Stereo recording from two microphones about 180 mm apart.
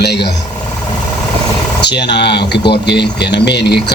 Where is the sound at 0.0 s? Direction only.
70° left (ahead or behind).